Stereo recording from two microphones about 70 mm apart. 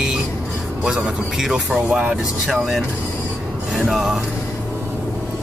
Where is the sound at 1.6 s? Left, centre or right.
Centre.